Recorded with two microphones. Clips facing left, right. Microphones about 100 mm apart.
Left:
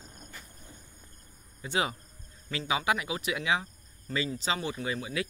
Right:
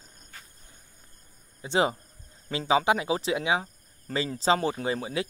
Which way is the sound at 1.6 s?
25° right (ahead or behind).